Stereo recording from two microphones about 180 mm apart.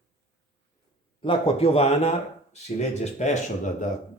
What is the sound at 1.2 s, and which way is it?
Speech, 30° left (ahead or behind).